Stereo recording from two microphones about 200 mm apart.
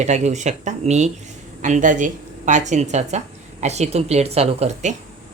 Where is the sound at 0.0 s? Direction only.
35° right (ahead or behind).